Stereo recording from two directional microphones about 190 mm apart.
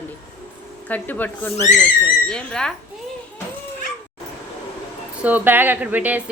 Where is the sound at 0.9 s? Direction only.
10° left (ahead or behind).